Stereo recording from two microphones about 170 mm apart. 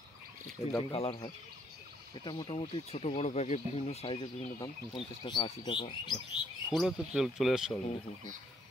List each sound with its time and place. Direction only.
0.7 s speech: 25° left (ahead or behind)
6.7 s speech: centre (ahead or behind)